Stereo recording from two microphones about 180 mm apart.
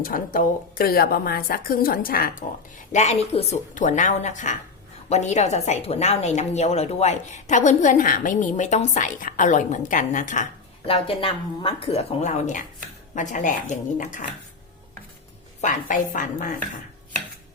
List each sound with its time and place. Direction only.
0.3 s a woman's voice: 55° left (ahead or behind)
10.8 s a woman's voice: 30° left (ahead or behind)
15.6 s a woman's voice: 45° left (ahead or behind)